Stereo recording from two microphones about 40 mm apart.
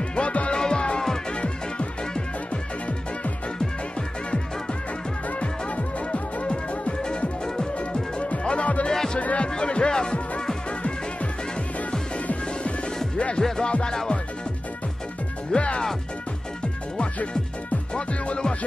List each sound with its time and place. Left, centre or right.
0.1 s music: left
5.4 s music: left
7.0 s music: centre
8.2 s music: left
9.2 s speech: left
9.6 s speech: left
13.6 s speech: left
13.9 s music: centre
15.5 s music: left
17.9 s music: left